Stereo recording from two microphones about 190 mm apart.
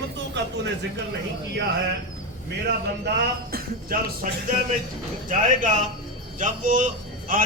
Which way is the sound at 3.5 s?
50° right (ahead or behind).